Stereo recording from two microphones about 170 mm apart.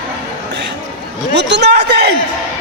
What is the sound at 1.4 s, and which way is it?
Speech, 85° right.